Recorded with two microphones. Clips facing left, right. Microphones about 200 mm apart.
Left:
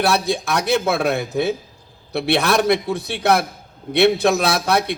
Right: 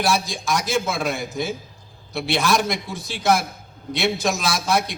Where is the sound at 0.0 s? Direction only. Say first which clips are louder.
Left 4 dB; 60° left (ahead or behind).